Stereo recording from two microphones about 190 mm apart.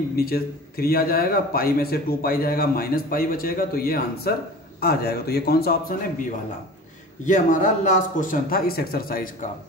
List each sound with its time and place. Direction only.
0.1 s a man's voice: 55° left (ahead or behind)
7.2 s a man's voice: 40° left (ahead or behind)